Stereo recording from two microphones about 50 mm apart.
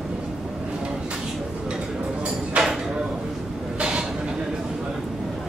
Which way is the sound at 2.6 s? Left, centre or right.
Right.